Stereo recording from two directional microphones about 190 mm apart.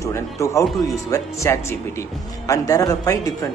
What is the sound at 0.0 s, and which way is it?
Speech, 15° left (ahead or behind).